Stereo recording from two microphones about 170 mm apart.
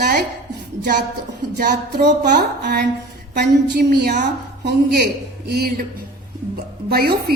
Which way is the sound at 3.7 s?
70° right (ahead or behind).